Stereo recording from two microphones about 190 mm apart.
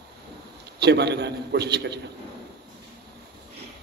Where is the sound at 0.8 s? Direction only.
60° right (ahead or behind).